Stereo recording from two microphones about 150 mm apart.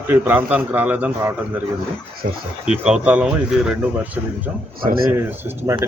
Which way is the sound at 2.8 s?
5° right (ahead or behind).